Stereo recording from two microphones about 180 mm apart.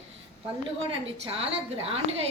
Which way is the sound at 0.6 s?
30° right (ahead or behind).